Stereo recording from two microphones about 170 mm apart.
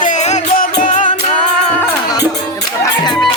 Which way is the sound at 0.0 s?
45° left (ahead or behind).